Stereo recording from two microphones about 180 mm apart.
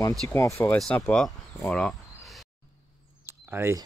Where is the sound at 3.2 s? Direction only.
15° right (ahead or behind).